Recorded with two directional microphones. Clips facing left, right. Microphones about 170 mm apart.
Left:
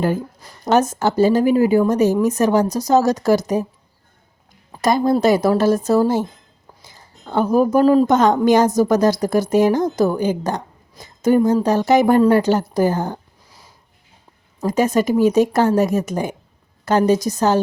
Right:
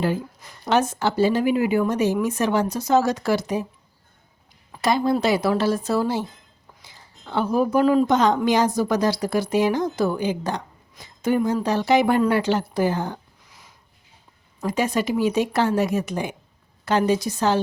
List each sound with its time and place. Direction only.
0.6 s a woman's voice: 45° left (ahead or behind)
4.7 s a woman's voice: 45° left (ahead or behind)
14.6 s a woman's voice: 45° left (ahead or behind)